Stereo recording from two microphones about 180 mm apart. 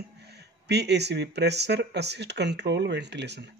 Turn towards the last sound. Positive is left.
turn(degrees=-70)  # may be behind; listen again after turning